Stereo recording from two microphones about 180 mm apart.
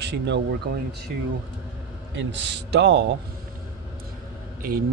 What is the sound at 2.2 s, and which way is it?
Speech, 80° right.